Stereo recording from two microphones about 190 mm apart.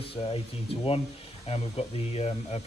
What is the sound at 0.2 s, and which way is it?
Speech, 30° left (ahead or behind).